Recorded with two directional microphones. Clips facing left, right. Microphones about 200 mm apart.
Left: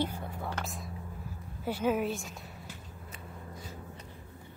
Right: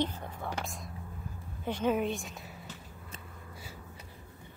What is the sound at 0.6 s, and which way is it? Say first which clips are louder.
Speech: even; 10° right (ahead or behind).